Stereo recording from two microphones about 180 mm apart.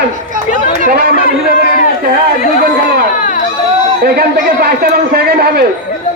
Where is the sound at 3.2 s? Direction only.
50° left (ahead or behind).